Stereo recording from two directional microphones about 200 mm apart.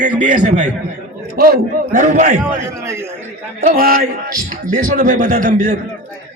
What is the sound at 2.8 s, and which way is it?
Speech, 10° right (ahead or behind).